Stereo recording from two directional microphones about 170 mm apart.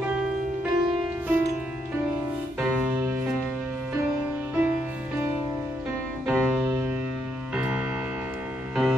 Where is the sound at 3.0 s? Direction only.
15° right (ahead or behind).